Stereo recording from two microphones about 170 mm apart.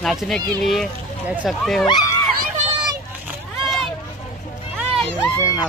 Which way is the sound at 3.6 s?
Centre (ahead or behind).